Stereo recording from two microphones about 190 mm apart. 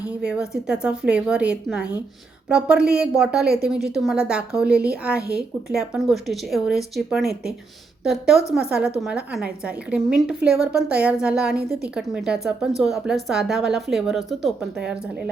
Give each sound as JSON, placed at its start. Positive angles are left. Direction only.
{"t": 0.0, "sound": "a woman's voice", "side_deg": -5}
{"t": 5.2, "sound": "speech", "side_deg": -55}
{"t": 5.6, "sound": "a woman's voice", "side_deg": 0}